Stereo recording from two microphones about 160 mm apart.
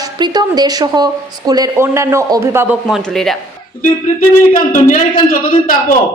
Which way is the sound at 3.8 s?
60° left (ahead or behind).